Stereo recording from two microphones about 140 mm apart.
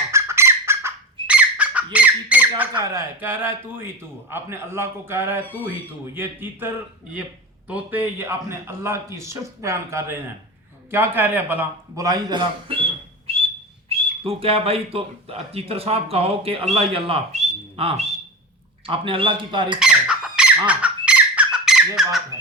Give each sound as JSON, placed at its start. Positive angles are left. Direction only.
{"t": 0.1, "sound": "bird", "side_deg": -20}
{"t": 2.8, "sound": "a man's voice", "side_deg": -20}
{"t": 7.7, "sound": "a man's voice", "side_deg": -15}
{"t": 11.9, "sound": "a man's voice", "side_deg": -25}
{"t": 19.8, "sound": "bird", "side_deg": -5}